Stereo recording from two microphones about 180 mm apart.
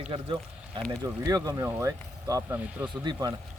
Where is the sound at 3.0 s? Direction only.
25° right (ahead or behind).